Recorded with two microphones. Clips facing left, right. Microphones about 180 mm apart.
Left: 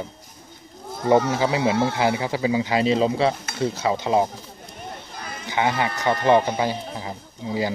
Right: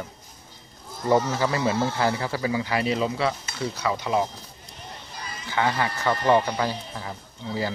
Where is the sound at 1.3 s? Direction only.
15° left (ahead or behind).